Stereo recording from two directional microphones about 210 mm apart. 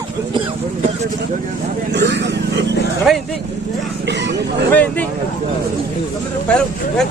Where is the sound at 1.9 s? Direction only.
55° right (ahead or behind).